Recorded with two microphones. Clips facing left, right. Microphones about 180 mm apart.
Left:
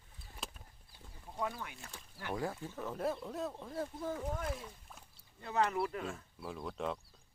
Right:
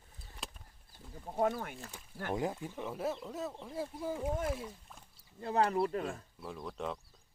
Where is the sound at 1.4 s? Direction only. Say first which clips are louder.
Right 8 dB; 45° right (ahead or behind).